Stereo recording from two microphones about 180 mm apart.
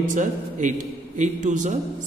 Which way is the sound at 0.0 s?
45° right (ahead or behind).